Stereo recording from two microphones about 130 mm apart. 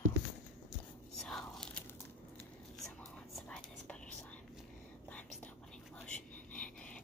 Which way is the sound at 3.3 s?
5° left (ahead or behind).